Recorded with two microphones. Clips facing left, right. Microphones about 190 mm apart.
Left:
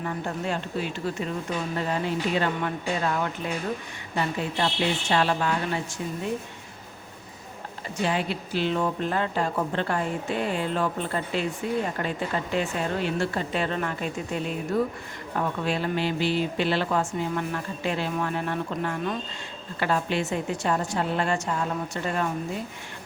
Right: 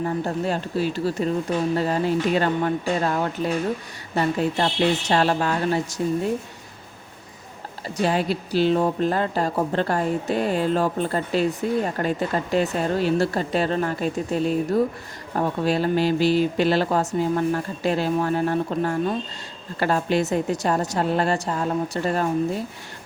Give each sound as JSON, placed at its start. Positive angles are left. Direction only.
{"t": 0.0, "sound": "speech", "side_deg": -35}
{"t": 7.9, "sound": "speech", "side_deg": -40}